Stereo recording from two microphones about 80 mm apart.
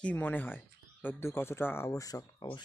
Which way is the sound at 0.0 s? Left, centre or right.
Left.